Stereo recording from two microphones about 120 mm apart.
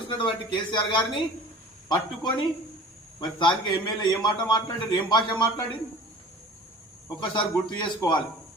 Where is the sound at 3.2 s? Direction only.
40° left (ahead or behind).